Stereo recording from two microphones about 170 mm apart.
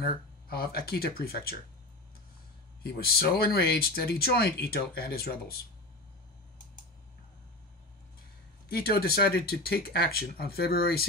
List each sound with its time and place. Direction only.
0.0 s speech: 60° left (ahead or behind)
2.8 s speech: 65° left (ahead or behind)
8.6 s speech: 65° left (ahead or behind)